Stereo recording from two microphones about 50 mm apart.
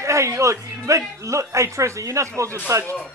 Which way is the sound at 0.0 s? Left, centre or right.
Right.